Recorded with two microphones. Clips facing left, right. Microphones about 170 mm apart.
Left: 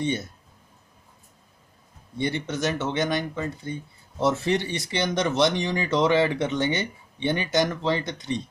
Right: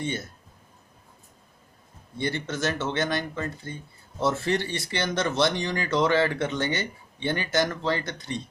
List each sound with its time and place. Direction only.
0.0 s speech: 20° left (ahead or behind)
2.1 s speech: 15° left (ahead or behind)